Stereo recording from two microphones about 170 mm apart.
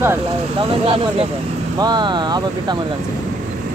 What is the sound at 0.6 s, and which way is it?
Speech, 35° right (ahead or behind).